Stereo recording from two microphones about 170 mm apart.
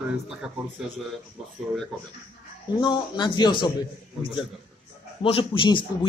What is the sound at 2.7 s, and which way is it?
Speech, 25° left (ahead or behind).